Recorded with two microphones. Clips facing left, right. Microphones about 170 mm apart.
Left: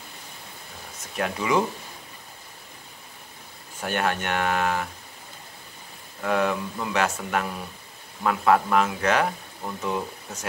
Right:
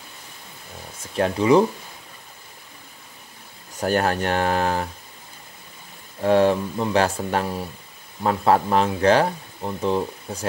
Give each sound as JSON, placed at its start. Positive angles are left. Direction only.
{"t": 1.1, "sound": "speech", "side_deg": -30}
{"t": 3.8, "sound": "speech", "side_deg": -35}
{"t": 6.2, "sound": "speech", "side_deg": -30}